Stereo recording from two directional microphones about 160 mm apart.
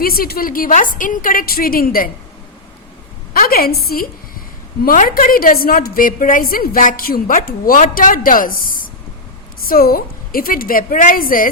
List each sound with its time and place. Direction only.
0.0 s a woman's voice: 70° left (ahead or behind)
3.3 s a woman's voice: 65° left (ahead or behind)